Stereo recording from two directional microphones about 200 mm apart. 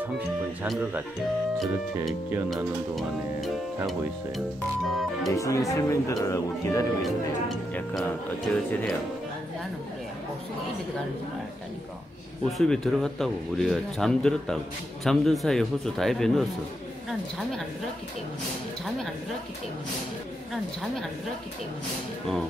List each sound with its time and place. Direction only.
0.7 s speech: 5° right (ahead or behind)
2.0 s speech: centre (ahead or behind)
5.3 s speech: 15° left (ahead or behind)
7.0 s speech: centre (ahead or behind)
12.4 s speech: centre (ahead or behind)